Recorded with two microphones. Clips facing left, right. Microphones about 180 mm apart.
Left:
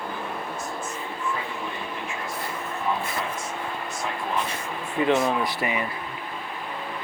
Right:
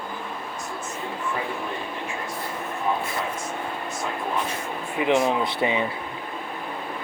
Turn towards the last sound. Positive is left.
turn(degrees=-25)  # may be behind; listen again after turning